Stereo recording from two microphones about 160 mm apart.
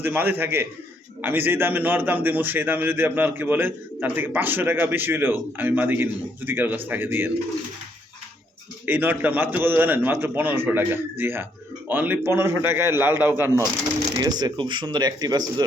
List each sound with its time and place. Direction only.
0.0 s a man's voice: 15° right (ahead or behind)
8.9 s a man's voice: 10° right (ahead or behind)
14.2 s speech: 25° right (ahead or behind)